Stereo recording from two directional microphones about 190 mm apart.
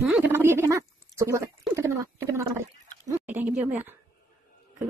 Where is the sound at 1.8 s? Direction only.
15° right (ahead or behind).